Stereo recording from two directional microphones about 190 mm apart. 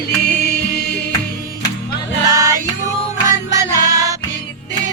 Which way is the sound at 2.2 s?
15° right (ahead or behind).